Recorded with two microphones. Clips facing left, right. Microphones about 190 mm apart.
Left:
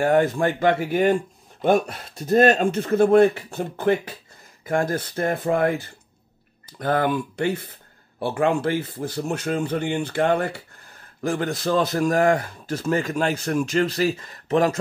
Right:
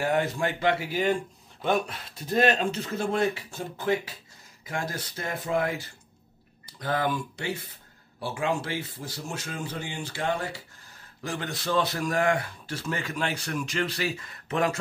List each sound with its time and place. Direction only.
0.0 s a man's voice: 50° left (ahead or behind)
11.2 s a man's voice: 45° left (ahead or behind)